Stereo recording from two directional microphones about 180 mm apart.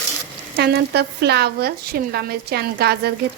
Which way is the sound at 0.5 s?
65° right (ahead or behind).